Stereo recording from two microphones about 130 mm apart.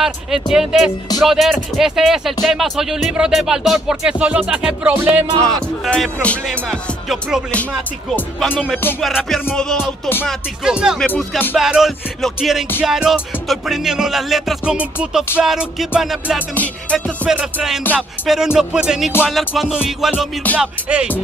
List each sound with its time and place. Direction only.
0.0 s music: 5° right (ahead or behind)
5.4 s music: 5° left (ahead or behind)
8.4 s music: 5° left (ahead or behind)
9.0 s music: centre (ahead or behind)
9.8 s music: 15° left (ahead or behind)
10.2 s music: 5° right (ahead or behind)
11.0 s music: 10° left (ahead or behind)
11.5 s music: 5° right (ahead or behind)
16.5 s music: 10° left (ahead or behind)
17.3 s music: 5° right (ahead or behind)